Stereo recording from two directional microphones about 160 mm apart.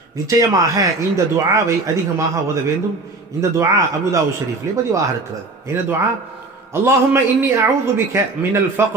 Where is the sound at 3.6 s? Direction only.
20° right (ahead or behind).